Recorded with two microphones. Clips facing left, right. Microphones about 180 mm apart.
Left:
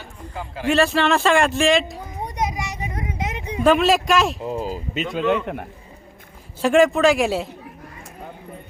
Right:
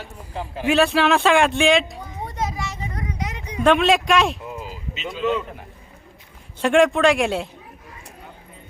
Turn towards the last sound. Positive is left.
turn(degrees=0)  # may be behind; listen again after turning